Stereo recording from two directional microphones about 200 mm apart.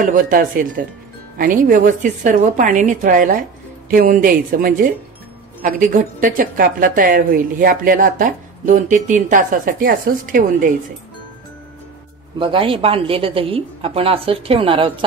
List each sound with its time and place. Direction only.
0.0 s a woman's voice: 40° right (ahead or behind)
12.4 s speech: 25° right (ahead or behind)